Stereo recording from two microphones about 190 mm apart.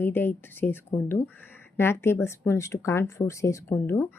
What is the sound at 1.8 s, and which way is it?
A woman's voice, 15° left (ahead or behind).